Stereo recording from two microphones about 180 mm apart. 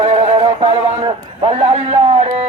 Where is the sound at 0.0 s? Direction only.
35° right (ahead or behind).